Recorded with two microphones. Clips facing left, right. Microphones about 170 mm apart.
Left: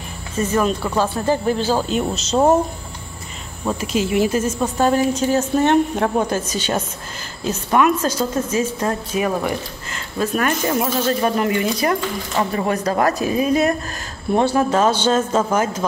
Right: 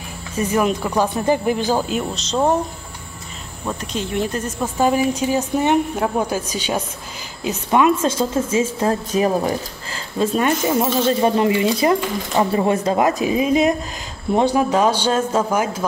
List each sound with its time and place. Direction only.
0.4 s a woman's voice: 15° right (ahead or behind)
2.1 s speech: 5° left (ahead or behind)
3.6 s a woman's voice: 5° left (ahead or behind); by 15.8 s 10° right (ahead or behind)